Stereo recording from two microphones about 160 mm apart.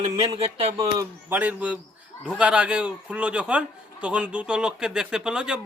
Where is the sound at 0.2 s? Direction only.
40° right (ahead or behind).